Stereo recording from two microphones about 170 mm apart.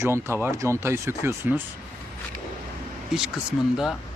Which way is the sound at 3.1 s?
5° right (ahead or behind).